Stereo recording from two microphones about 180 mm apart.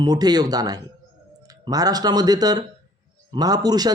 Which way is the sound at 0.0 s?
20° right (ahead or behind).